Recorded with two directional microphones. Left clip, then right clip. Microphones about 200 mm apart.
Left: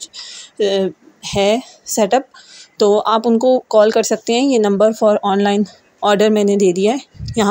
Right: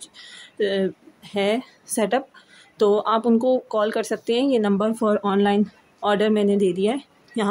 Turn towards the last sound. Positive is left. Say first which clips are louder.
# left 8 dB
turn(degrees=25)  # may be behind; listen again after turning